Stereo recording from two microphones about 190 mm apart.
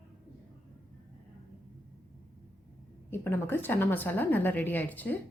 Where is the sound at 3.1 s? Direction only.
10° left (ahead or behind).